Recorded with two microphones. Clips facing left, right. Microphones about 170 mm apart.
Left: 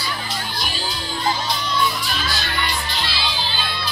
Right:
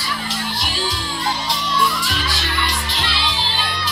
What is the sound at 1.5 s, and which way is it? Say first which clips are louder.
Music: right 1 dB; 90° right.